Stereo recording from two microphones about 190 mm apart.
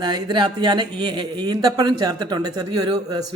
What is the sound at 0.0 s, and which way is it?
A man's voice, 25° right (ahead or behind).